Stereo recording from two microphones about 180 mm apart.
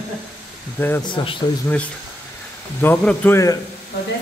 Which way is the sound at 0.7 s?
10° left (ahead or behind).